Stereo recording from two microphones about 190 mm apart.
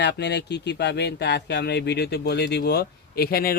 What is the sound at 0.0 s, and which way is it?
Speech, 65° left (ahead or behind).